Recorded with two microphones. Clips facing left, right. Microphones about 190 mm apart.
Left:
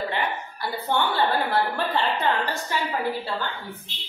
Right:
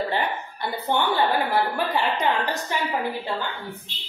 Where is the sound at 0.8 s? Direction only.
15° right (ahead or behind).